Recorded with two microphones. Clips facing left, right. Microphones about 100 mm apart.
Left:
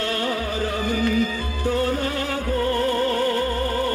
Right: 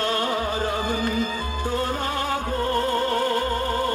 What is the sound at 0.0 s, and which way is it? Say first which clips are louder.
Music: right 1 dB; 30° right (ahead or behind).